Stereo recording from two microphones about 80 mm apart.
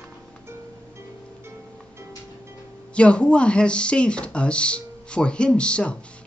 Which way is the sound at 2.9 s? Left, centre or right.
Centre.